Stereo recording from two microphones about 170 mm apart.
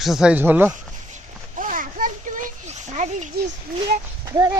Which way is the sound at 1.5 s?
55° right (ahead or behind).